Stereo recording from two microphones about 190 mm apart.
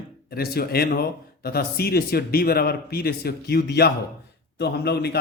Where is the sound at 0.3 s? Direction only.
55° left (ahead or behind).